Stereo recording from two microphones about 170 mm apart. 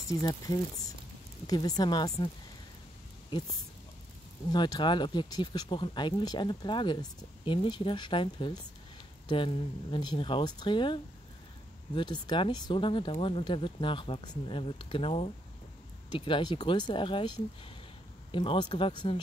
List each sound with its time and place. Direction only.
0.1 s speech: 20° left (ahead or behind)
4.5 s speech: 25° left (ahead or behind)
18.3 s speech: 30° left (ahead or behind)